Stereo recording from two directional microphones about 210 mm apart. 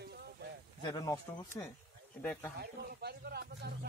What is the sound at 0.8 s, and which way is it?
Speech, 20° left (ahead or behind).